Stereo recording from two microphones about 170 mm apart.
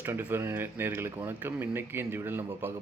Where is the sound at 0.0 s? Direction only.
15° right (ahead or behind).